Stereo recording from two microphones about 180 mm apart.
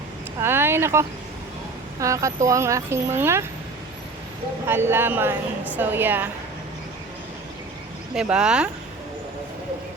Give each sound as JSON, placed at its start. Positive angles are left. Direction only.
{"t": 0.4, "sound": "a woman's voice", "side_deg": -15}
{"t": 4.7, "sound": "a woman's voice", "side_deg": -15}
{"t": 8.1, "sound": "speech", "side_deg": -5}